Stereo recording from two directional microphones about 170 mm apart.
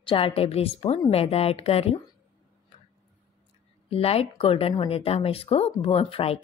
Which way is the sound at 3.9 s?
35° left (ahead or behind).